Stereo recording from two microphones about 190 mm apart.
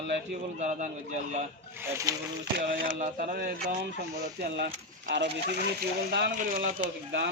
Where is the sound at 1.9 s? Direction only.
15° right (ahead or behind).